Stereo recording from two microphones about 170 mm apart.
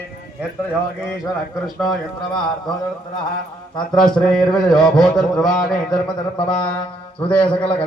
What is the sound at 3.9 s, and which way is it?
A man's voice, 5° left (ahead or behind).